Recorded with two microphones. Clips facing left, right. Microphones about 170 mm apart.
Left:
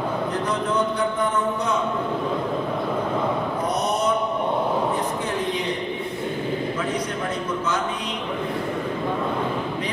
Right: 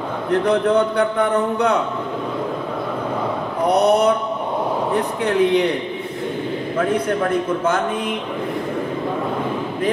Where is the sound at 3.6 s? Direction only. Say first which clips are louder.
Right 11 dB; 65° right (ahead or behind).